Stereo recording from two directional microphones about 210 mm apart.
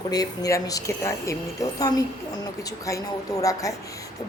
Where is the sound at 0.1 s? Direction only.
15° left (ahead or behind).